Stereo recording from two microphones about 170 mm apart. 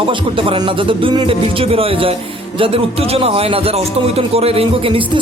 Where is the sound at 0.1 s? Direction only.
30° right (ahead or behind).